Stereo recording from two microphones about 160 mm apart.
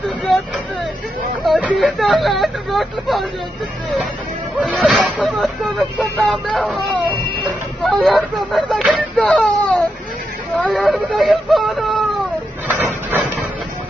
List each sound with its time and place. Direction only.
1.4 s speech: 5° right (ahead or behind)
4.6 s speech: 5° right (ahead or behind)